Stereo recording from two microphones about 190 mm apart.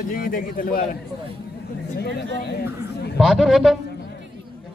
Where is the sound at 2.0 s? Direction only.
60° left (ahead or behind).